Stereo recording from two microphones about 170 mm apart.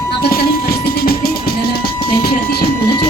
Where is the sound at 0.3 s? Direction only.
60° left (ahead or behind).